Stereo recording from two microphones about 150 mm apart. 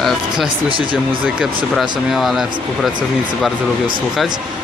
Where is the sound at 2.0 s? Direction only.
Centre (ahead or behind).